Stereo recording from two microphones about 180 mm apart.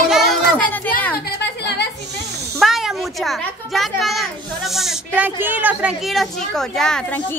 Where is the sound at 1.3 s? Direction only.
70° left (ahead or behind).